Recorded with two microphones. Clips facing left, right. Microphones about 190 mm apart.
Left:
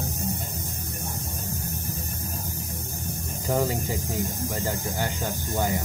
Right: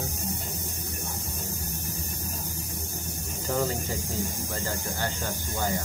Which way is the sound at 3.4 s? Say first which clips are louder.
Left 3 dB; 10° left (ahead or behind).